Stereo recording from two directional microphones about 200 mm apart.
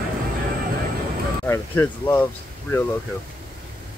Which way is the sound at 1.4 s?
10° left (ahead or behind).